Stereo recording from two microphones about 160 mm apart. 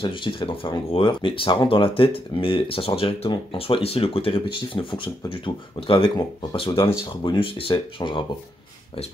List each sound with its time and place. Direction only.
0.0 s speech: 30° left (ahead or behind)